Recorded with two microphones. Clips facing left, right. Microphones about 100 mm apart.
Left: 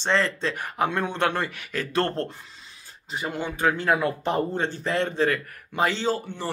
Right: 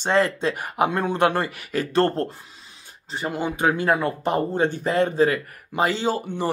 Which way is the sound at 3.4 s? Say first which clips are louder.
Right 3 dB; 15° right (ahead or behind).